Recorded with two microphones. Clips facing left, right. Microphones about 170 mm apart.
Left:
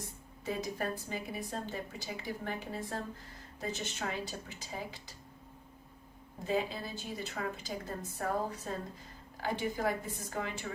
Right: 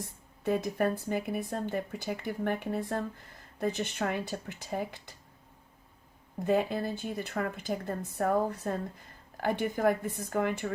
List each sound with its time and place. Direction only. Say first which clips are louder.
0.4 s speech: right 7 dB; 60° right (ahead or behind)
6.4 s speech: right 6 dB; 60° right (ahead or behind)